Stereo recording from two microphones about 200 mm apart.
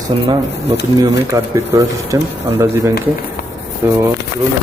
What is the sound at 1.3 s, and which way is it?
Speech, 15° right (ahead or behind).